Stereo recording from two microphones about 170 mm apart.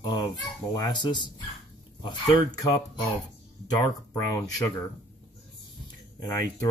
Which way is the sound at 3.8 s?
15° left (ahead or behind).